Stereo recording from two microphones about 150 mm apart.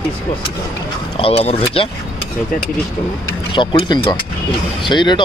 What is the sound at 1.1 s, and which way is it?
Speech, 40° left (ahead or behind).